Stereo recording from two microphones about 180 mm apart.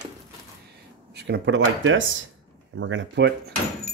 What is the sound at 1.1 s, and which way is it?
Speech, 70° right (ahead or behind).